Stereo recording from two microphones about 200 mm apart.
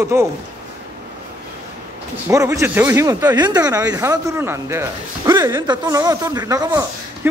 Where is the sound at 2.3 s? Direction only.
15° right (ahead or behind).